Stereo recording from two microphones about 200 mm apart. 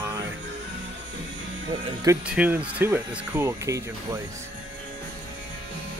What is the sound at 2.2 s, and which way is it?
Speech, 5° right (ahead or behind).